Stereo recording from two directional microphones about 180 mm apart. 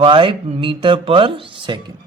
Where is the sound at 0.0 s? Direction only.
30° right (ahead or behind).